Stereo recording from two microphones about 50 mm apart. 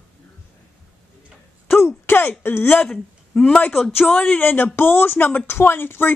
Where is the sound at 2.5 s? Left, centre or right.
Left.